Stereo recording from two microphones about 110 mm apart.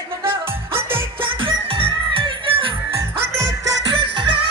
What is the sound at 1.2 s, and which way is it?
Music, 50° right (ahead or behind).